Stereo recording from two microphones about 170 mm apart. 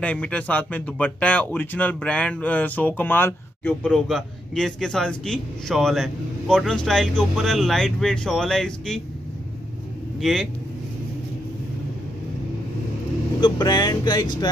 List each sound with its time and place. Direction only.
0.0 s speech: 5° left (ahead or behind)
10.2 s speech: centre (ahead or behind)
13.4 s speech: 25° left (ahead or behind)